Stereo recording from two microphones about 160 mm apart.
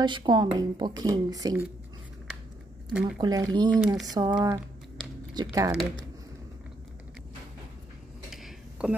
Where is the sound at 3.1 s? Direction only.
25° right (ahead or behind).